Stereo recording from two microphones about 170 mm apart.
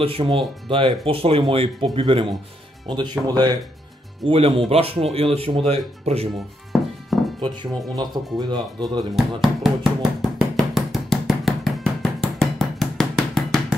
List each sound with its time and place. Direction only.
0.0 s speech: 30° right (ahead or behind)
7.1 s music: centre (ahead or behind)
7.4 s speech: 25° right (ahead or behind)
9.1 s speech: centre (ahead or behind)
10.5 s knock: centre (ahead or behind)